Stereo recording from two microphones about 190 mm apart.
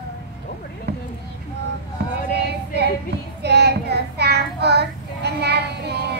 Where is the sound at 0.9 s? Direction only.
60° right (ahead or behind).